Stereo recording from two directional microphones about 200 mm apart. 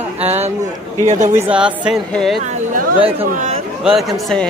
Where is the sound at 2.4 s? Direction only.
40° right (ahead or behind).